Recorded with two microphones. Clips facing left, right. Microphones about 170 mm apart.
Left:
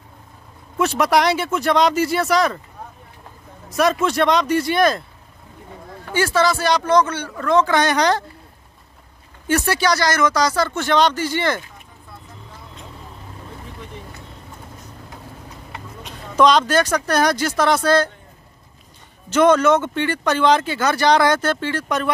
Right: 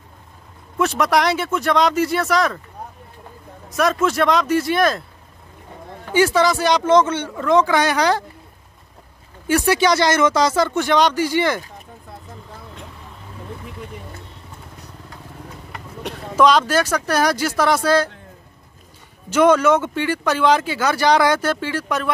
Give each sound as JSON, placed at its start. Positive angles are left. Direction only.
{"t": 0.7, "sound": "speech", "side_deg": 0}
{"t": 3.7, "sound": "speech", "side_deg": 0}
{"t": 6.1, "sound": "speech", "side_deg": -15}
{"t": 9.5, "sound": "speech", "side_deg": -20}
{"t": 16.0, "sound": "vehicle", "side_deg": -65}
{"t": 16.3, "sound": "speech", "side_deg": -5}
{"t": 19.3, "sound": "speech", "side_deg": -10}